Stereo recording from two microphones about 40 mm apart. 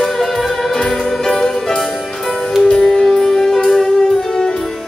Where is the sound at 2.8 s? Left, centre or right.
Centre.